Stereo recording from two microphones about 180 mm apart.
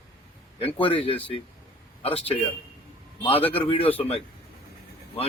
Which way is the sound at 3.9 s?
35° left (ahead or behind).